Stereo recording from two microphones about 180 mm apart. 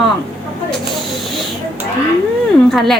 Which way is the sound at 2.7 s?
Centre (ahead or behind).